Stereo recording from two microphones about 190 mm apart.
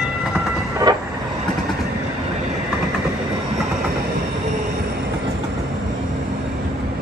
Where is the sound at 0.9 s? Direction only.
20° right (ahead or behind).